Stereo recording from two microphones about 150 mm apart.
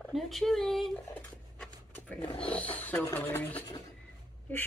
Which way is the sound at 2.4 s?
10° left (ahead or behind).